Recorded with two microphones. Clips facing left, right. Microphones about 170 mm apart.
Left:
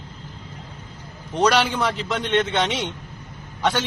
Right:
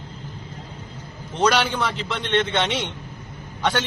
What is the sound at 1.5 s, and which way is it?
A man's voice, 5° left (ahead or behind).